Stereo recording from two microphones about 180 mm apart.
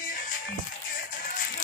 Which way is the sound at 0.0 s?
50° left (ahead or behind).